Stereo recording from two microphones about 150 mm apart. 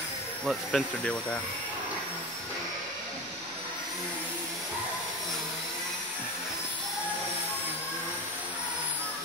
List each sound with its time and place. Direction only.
0.5 s speech: centre (ahead or behind)